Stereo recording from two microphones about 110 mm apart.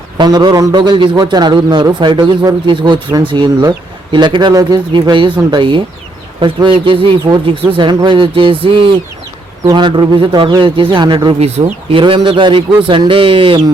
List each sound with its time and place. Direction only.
0.2 s a man's voice: 40° right (ahead or behind)
11.3 s speech: 70° right (ahead or behind); by 13.6 s 55° right (ahead or behind)